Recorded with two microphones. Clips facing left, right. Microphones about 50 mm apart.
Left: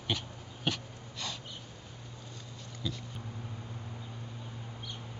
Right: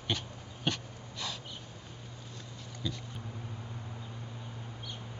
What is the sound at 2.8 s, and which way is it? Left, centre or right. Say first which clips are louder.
Speech: even; centre.